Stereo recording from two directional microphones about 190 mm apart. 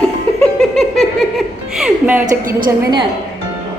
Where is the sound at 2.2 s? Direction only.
45° right (ahead or behind).